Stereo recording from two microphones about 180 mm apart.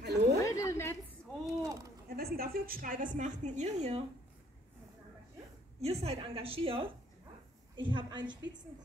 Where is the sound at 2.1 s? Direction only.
60° right (ahead or behind); by 3.9 s 40° right (ahead or behind).